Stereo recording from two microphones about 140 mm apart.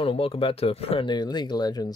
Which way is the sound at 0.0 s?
40° left (ahead or behind).